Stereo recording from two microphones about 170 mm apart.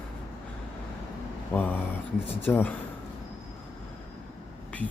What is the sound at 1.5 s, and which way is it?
Speech, 10° left (ahead or behind).